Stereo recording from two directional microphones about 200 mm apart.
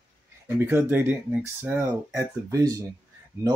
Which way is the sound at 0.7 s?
10° right (ahead or behind).